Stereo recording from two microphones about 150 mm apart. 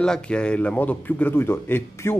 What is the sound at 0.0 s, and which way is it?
Speech, 5° left (ahead or behind).